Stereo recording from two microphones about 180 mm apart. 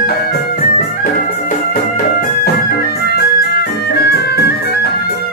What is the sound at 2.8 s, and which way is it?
Music, 60° left (ahead or behind).